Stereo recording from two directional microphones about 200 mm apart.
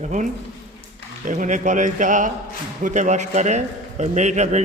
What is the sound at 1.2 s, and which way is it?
A man's voice, 40° right (ahead or behind).